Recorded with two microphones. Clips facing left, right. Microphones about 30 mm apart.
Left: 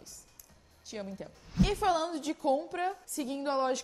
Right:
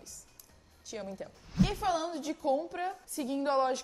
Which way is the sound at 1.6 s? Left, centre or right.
Left.